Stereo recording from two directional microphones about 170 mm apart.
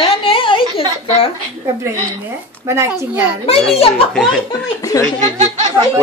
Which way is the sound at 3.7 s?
35° left (ahead or behind).